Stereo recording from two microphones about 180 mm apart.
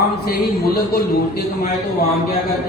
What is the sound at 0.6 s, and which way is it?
Speech, 60° left (ahead or behind).